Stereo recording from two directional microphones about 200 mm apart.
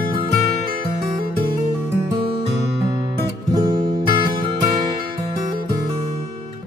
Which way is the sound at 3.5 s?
20° right (ahead or behind).